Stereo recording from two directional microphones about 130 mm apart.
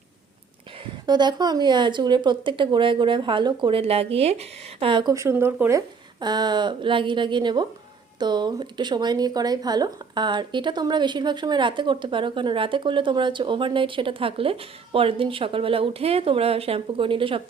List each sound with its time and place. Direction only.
1.0 s a woman's voice: 35° right (ahead or behind)
5.1 s speech: 20° right (ahead or behind)
6.1 s a woman's voice: 35° right (ahead or behind)